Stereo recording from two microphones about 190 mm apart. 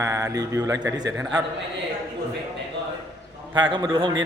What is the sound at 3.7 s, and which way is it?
Speech, 25° right (ahead or behind).